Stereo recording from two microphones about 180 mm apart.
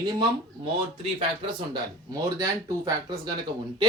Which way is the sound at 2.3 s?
20° right (ahead or behind).